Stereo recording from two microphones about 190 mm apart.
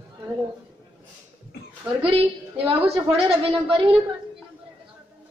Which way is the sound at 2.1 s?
30° right (ahead or behind).